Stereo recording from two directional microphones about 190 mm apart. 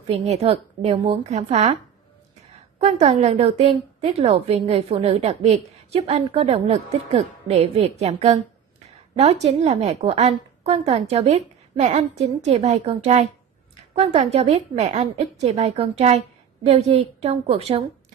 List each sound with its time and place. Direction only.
0.3 s a woman's voice: 30° right (ahead or behind)
2.8 s a woman's voice: 35° right (ahead or behind)